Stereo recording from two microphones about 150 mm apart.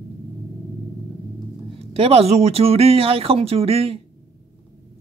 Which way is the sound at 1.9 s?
40° right (ahead or behind).